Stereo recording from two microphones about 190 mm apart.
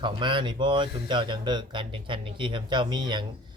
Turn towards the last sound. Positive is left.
turn(degrees=-25)  # may be behind; listen again after turning